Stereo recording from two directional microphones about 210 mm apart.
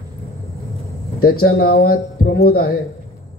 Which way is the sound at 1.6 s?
45° left (ahead or behind).